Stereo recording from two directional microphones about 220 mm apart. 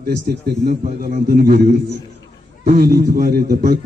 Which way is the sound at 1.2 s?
45° right (ahead or behind).